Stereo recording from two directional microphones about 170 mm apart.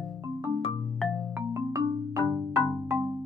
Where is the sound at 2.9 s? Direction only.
15° right (ahead or behind).